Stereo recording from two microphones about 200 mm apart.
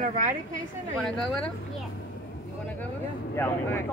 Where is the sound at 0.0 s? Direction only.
40° right (ahead or behind).